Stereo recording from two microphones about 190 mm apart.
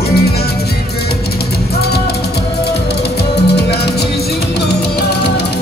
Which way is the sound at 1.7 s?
60° left (ahead or behind).